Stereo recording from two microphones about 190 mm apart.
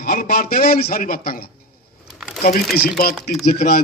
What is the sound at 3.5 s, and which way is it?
Speech, 35° left (ahead or behind).